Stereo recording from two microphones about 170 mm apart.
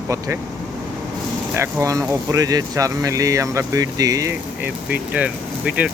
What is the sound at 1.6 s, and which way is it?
Speech, 15° right (ahead or behind).